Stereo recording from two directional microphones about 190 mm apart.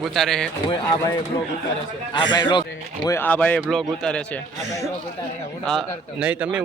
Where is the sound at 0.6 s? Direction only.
15° left (ahead or behind).